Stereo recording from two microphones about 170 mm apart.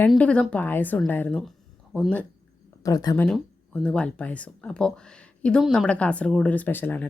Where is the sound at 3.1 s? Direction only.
5° left (ahead or behind).